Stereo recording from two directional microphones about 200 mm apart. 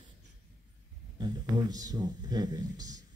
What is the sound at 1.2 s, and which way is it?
Speech, 20° right (ahead or behind).